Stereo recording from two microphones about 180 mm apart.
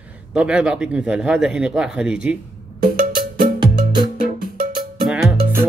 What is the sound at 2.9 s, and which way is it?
Music, 50° right (ahead or behind).